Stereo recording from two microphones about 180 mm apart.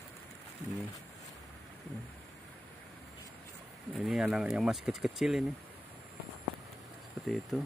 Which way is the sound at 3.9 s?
Centre (ahead or behind).